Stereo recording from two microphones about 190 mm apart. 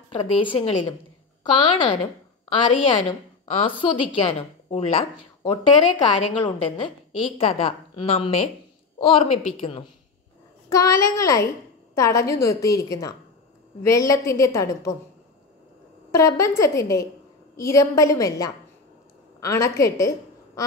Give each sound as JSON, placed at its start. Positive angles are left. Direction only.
{"t": 0.1, "sound": "a woman's voice", "side_deg": 25}
{"t": 2.5, "sound": "a woman's voice", "side_deg": 25}
{"t": 10.7, "sound": "a woman's voice", "side_deg": 15}
{"t": 16.1, "sound": "a woman's voice", "side_deg": 15}